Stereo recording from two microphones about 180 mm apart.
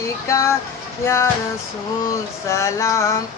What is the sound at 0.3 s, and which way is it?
Male singing, 15° left (ahead or behind).